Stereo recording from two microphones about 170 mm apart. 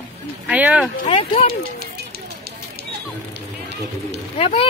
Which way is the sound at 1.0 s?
30° left (ahead or behind).